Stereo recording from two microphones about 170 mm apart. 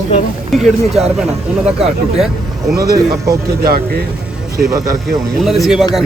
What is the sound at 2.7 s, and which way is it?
Speech, 20° right (ahead or behind).